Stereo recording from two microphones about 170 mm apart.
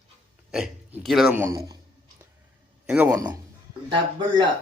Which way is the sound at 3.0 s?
20° right (ahead or behind).